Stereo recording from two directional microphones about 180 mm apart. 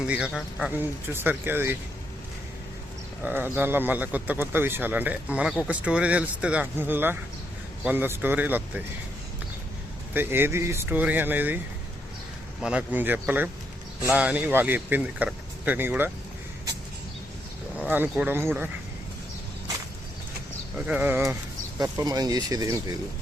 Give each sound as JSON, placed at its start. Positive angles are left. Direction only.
{"t": 0.0, "sound": "speech", "side_deg": -5}
{"t": 3.2, "sound": "speech", "side_deg": -10}
{"t": 10.2, "sound": "speech", "side_deg": -10}
{"t": 12.6, "sound": "speech", "side_deg": -5}
{"t": 17.8, "sound": "speech", "side_deg": -10}
{"t": 20.7, "sound": "speech", "side_deg": -10}